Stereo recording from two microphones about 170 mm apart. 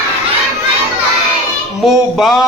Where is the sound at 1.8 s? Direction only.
5° right (ahead or behind).